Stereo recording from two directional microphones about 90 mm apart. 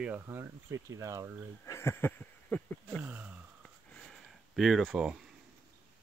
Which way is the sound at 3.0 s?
20° right (ahead or behind).